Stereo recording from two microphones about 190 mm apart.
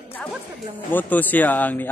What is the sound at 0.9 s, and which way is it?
Speech, 10° left (ahead or behind).